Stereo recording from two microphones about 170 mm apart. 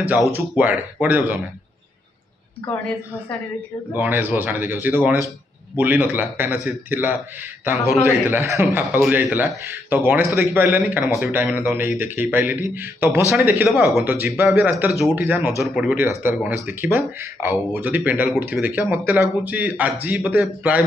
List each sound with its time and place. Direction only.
0.3 s a man's voice: 10° right (ahead or behind)
3.9 s a man's voice: 10° right (ahead or behind)